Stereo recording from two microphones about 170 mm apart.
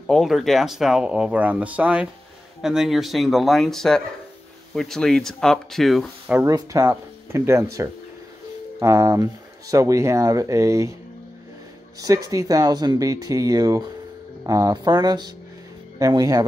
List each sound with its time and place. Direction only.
0.0 s speech: centre (ahead or behind)
6.2 s speech: 10° right (ahead or behind)
12.0 s speech: 20° right (ahead or behind)